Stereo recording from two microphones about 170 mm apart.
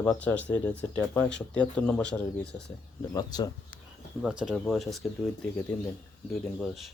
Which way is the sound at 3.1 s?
25° left (ahead or behind).